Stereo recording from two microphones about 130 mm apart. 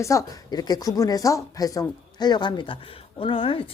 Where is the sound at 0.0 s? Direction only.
25° left (ahead or behind).